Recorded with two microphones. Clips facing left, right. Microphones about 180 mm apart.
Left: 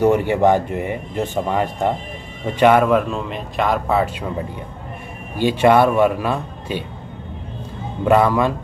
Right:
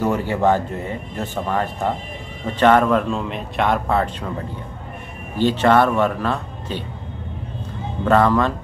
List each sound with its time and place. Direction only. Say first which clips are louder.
0.0 s a man's voice: left 4 dB; 20° left (ahead or behind)
5.4 s speech: left 2 dB; 10° left (ahead or behind)
8.0 s speech: left 1 dB; 10° left (ahead or behind)